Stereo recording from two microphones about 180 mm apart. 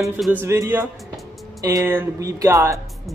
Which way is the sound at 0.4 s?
15° right (ahead or behind).